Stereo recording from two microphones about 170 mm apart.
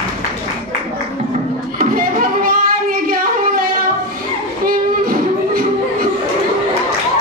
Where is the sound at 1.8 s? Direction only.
55° right (ahead or behind).